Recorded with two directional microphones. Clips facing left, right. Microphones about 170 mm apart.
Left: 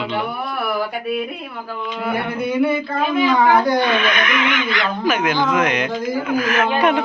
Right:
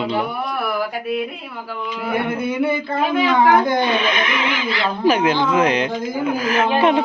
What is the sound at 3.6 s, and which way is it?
Speech, 25° right (ahead or behind).